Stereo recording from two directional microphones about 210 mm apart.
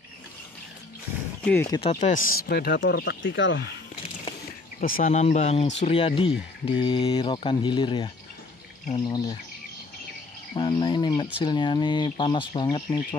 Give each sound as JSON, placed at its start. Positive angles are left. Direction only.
{"t": 1.4, "sound": "speech", "side_deg": 10}
{"t": 1.8, "sound": "speech", "side_deg": 30}
{"t": 4.7, "sound": "speech", "side_deg": 40}
{"t": 10.5, "sound": "speech", "side_deg": 20}